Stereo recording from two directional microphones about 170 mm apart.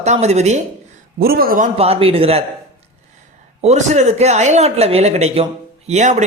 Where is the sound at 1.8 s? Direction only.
35° right (ahead or behind).